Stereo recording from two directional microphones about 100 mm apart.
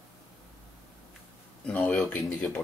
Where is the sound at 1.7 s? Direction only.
15° left (ahead or behind).